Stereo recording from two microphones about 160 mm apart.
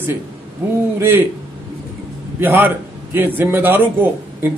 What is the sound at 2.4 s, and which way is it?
A man's voice, 15° right (ahead or behind).